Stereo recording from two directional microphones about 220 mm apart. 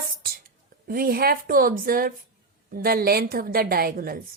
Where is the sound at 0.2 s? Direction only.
40° right (ahead or behind).